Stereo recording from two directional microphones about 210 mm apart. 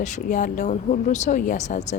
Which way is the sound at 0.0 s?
35° left (ahead or behind).